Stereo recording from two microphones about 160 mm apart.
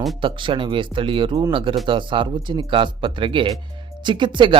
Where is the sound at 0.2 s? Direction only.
30° right (ahead or behind).